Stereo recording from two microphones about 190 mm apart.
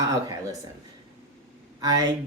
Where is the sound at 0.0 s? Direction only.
20° right (ahead or behind).